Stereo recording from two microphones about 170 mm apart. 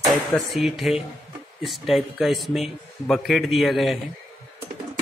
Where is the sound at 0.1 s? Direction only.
Centre (ahead or behind).